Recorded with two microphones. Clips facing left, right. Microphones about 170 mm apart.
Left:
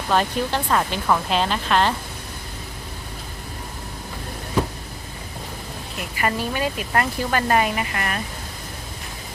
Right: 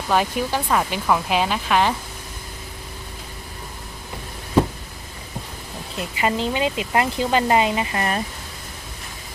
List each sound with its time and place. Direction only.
0.1 s speech: 10° right (ahead or behind)
6.1 s speech: 20° right (ahead or behind)